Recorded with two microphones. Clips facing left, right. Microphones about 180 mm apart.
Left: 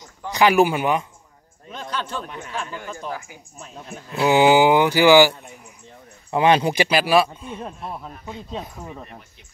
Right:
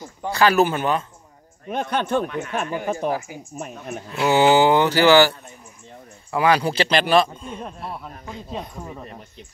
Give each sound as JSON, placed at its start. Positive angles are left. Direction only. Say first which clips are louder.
{"t": 0.3, "sound": "speech", "louder": "left 1 dB", "side_deg": 15}
{"t": 1.7, "sound": "speech", "louder": "right 7 dB", "side_deg": -60}
{"t": 4.2, "sound": "speech", "louder": "left 1 dB", "side_deg": 15}
{"t": 6.3, "sound": "speech", "louder": "left 2 dB", "side_deg": 25}
{"t": 7.8, "sound": "speech", "louder": "even", "side_deg": -5}